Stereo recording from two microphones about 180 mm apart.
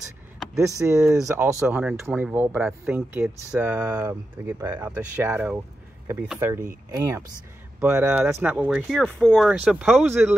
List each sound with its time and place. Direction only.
0.6 s speech: 15° right (ahead or behind)
1.6 s speech: 5° right (ahead or behind)